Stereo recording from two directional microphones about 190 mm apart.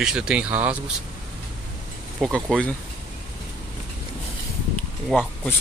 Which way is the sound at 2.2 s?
5° left (ahead or behind).